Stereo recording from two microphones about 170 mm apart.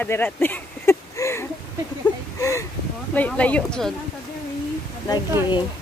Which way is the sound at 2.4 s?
15° left (ahead or behind).